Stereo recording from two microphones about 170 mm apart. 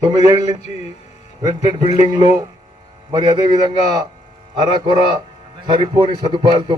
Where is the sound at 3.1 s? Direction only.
25° right (ahead or behind).